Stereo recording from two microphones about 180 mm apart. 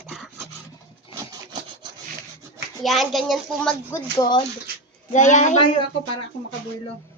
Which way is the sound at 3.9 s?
25° left (ahead or behind).